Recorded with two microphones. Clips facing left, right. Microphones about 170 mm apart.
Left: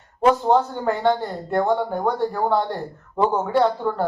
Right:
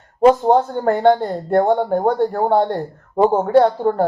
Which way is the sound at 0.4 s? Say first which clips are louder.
Right 4 dB; 50° right (ahead or behind).